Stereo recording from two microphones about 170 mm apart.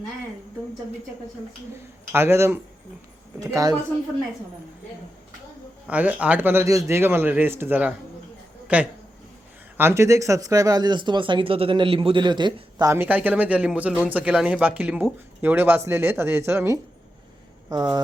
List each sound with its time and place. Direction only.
2.1 s speech: 15° right (ahead or behind)
5.9 s speech: 10° right (ahead or behind); by 12.9 s 25° right (ahead or behind)
12.9 s speech: 10° right (ahead or behind)